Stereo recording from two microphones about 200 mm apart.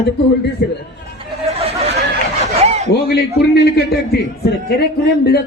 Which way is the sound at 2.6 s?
35° right (ahead or behind).